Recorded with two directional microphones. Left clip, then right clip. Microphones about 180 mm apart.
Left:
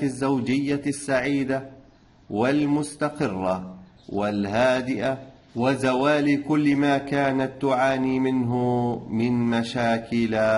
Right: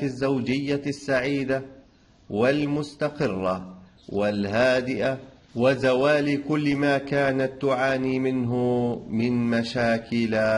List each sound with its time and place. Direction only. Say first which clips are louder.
0.0 s a man's voice: left 1 dB; 15° right (ahead or behind)